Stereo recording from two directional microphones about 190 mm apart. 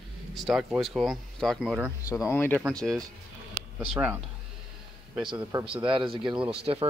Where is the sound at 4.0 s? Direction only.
10° right (ahead or behind).